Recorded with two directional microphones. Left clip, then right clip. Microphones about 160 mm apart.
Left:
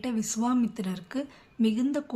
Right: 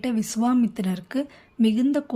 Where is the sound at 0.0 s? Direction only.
35° right (ahead or behind).